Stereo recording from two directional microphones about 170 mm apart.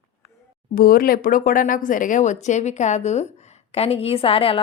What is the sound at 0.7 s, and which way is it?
A woman's voice, 60° left (ahead or behind).